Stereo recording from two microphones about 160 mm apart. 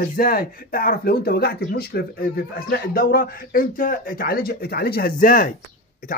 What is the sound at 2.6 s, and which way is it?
Speech, 65° left (ahead or behind).